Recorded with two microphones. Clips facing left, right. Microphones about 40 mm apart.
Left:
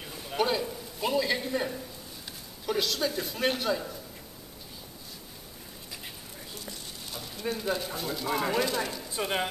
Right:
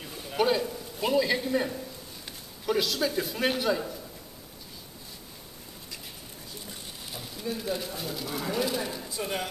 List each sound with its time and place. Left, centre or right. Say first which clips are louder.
0.3 s a man's voice: right 2 dB; centre
7.1 s a sound: even; centre
7.7 s a man's voice: left 1 dB; centre
8.3 s speech: left 6 dB; centre
8.6 s a man's voice: even; centre
9.1 s speech: left 4 dB; left